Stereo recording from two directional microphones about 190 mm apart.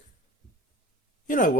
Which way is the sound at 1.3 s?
45° left (ahead or behind).